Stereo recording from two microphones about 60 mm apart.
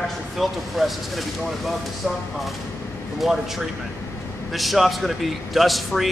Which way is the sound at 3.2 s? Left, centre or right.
Centre.